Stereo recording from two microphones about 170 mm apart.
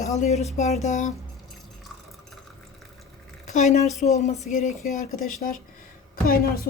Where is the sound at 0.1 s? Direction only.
40° left (ahead or behind).